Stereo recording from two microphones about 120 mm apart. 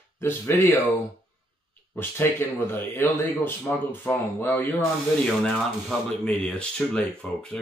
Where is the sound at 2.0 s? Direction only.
20° left (ahead or behind).